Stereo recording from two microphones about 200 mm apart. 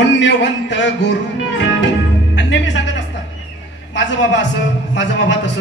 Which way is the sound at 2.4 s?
65° left (ahead or behind).